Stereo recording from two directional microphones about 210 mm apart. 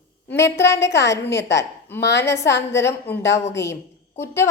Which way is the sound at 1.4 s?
55° left (ahead or behind).